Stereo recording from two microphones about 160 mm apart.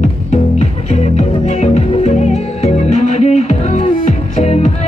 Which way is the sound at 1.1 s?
40° left (ahead or behind).